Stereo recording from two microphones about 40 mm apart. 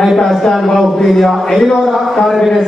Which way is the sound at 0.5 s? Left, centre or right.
Centre.